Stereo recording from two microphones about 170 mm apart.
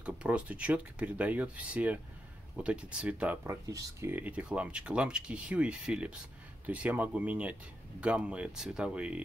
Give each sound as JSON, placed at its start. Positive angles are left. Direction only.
{"t": 0.0, "sound": "speech", "side_deg": -5}
{"t": 3.6, "sound": "speech", "side_deg": -20}